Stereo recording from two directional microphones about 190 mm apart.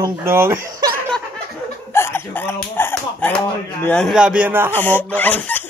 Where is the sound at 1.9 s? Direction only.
10° left (ahead or behind).